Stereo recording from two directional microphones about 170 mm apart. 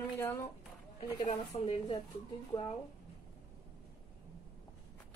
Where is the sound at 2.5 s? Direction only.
25° left (ahead or behind).